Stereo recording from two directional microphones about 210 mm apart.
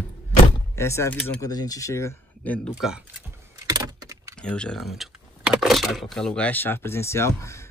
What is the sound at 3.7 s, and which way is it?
Keys jangling, 15° right (ahead or behind).